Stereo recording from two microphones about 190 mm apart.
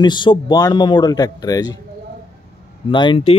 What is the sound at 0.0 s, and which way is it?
Speech, 25° left (ahead or behind).